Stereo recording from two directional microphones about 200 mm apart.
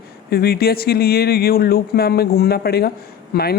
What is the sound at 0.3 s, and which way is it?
Speech, 50° left (ahead or behind).